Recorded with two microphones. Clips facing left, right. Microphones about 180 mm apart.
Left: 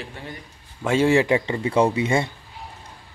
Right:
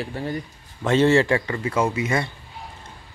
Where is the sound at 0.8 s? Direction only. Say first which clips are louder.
Right 1 dB; 10° left (ahead or behind); by 2.3 s 25° left (ahead or behind).